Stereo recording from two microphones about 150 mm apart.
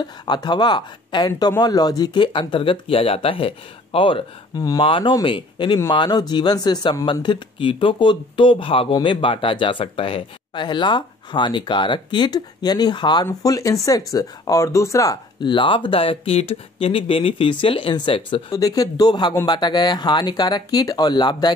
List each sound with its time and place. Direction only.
0.0 s speech: 30° left (ahead or behind)
18.5 s speech: 25° left (ahead or behind)